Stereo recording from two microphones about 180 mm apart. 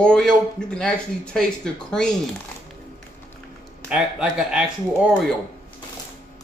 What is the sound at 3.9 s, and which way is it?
Speech, 5° right (ahead or behind).